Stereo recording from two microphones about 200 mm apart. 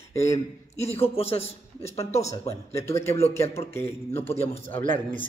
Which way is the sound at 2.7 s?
15° left (ahead or behind).